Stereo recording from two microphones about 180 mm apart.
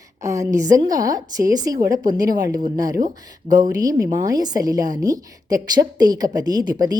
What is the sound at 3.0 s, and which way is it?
Speech, 45° right (ahead or behind).